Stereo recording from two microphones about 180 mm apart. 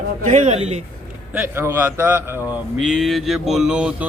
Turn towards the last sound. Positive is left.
turn(degrees=-5)  # may be behind; listen again after turning